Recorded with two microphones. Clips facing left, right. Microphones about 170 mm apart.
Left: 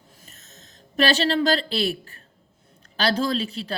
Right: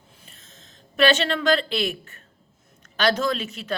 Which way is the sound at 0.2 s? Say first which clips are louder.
Left 1 dB; 40° left (ahead or behind).